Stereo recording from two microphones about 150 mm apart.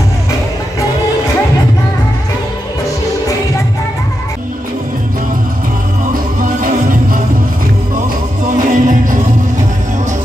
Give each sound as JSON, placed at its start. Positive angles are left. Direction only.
{"t": 6.1, "sound": "music", "side_deg": -65}
{"t": 8.5, "sound": "music", "side_deg": -60}